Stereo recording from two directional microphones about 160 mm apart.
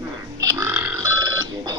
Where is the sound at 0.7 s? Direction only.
10° right (ahead or behind).